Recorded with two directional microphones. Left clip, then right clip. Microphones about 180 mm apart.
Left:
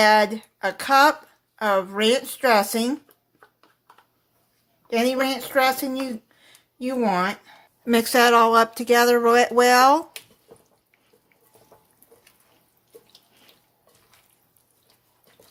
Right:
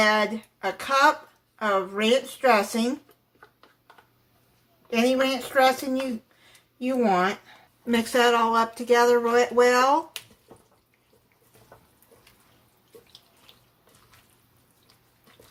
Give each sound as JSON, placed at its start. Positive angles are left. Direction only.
{"t": 0.0, "sound": "speech", "side_deg": 60}
{"t": 4.9, "sound": "speech", "side_deg": 55}